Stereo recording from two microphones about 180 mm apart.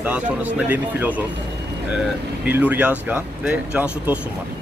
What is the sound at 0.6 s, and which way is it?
Speech, 10° right (ahead or behind).